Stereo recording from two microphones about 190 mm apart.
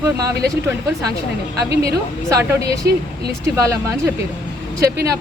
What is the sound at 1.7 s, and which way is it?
Speech, 60° right (ahead or behind).